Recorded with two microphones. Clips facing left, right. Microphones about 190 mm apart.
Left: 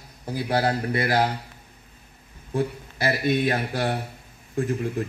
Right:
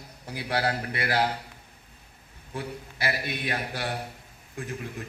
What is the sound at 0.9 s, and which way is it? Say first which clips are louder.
Speech: left 5 dB; 40° left (ahead or behind).